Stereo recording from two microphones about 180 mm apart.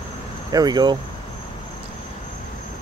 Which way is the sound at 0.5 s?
20° right (ahead or behind).